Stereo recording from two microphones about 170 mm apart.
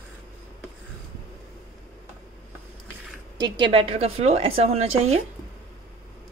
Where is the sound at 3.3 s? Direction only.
25° right (ahead or behind).